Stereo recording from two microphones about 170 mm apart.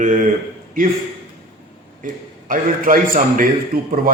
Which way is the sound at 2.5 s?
50° right (ahead or behind).